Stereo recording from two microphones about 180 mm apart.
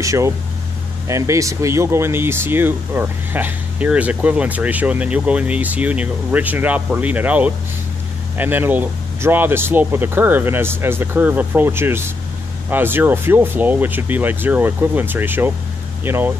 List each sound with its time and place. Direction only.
0.0 s speech: 15° right (ahead or behind)